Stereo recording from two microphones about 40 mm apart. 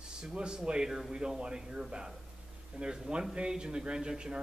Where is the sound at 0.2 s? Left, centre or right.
Centre.